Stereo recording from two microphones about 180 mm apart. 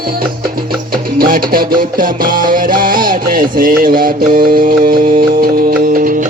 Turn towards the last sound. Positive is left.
turn(degrees=-45)  # may be behind; listen again after turning